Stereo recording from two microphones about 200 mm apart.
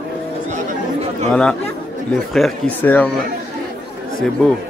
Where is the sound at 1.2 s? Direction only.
5° left (ahead or behind).